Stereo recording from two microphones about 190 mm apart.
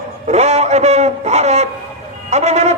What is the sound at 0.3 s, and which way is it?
A man's voice, 35° right (ahead or behind).